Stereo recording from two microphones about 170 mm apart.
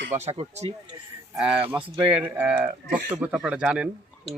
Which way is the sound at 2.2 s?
10° right (ahead or behind).